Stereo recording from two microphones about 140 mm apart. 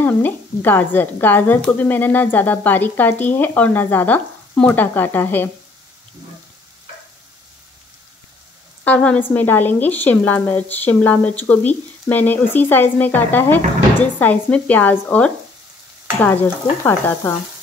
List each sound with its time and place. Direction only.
0.0 s speech: 15° left (ahead or behind)
8.8 s speech: 10° left (ahead or behind)
16.8 s speech: 15° left (ahead or behind)